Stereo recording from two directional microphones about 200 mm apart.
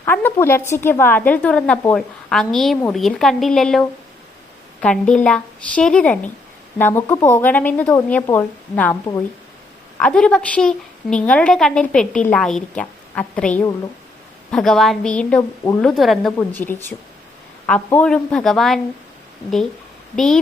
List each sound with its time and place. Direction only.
0.0 s a woman's voice: 10° left (ahead or behind)
15.4 s a woman's voice: 15° left (ahead or behind)
15.8 s a woman's voice: centre (ahead or behind)
17.7 s a woman's voice: 10° left (ahead or behind)
20.1 s a woman's voice: centre (ahead or behind)